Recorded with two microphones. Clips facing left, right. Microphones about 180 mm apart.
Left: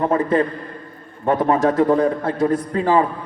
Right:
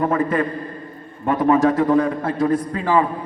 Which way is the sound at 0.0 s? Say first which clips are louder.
Left 2 dB; 30° left (ahead or behind).